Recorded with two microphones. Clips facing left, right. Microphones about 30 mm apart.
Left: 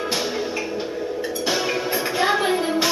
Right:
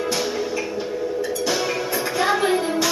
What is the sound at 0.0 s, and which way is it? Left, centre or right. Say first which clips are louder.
Music: right 1 dB; centre.